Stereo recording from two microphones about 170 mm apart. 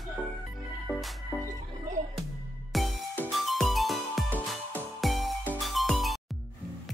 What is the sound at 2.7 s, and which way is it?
Music, centre (ahead or behind).